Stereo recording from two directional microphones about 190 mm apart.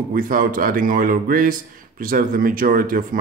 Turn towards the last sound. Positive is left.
turn(degrees=-45)  # may be behind; listen again after turning